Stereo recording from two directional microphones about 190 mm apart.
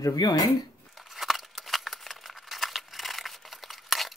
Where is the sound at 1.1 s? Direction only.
Centre (ahead or behind).